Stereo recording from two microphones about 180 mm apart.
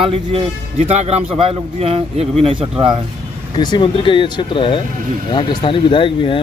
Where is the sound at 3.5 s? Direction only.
25° left (ahead or behind).